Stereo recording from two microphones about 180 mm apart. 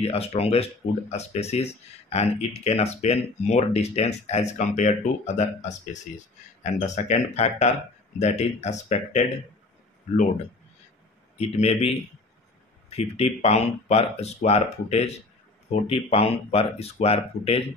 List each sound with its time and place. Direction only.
0.0 s speech: 35° left (ahead or behind)
11.3 s speech: 35° left (ahead or behind)
12.9 s speech: 35° left (ahead or behind)